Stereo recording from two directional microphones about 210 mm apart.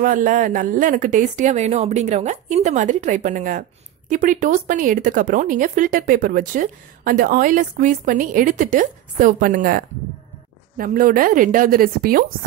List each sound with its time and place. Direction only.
0.0 s speech: 40° right (ahead or behind)